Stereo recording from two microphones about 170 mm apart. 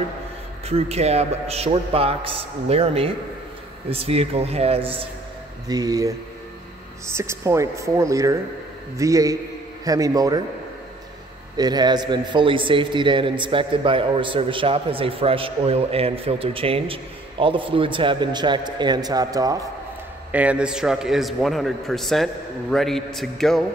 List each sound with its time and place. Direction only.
0.7 s a man's voice: 35° right (ahead or behind)
5.7 s a man's voice: 20° right (ahead or behind)
11.5 s a man's voice: 25° right (ahead or behind)
20.2 s a man's voice: 10° right (ahead or behind)